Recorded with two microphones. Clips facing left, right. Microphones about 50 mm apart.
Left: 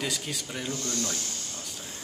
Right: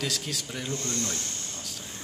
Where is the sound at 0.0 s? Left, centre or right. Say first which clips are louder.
Even; centre.